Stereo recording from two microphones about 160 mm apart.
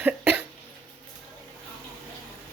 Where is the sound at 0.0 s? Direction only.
10° right (ahead or behind).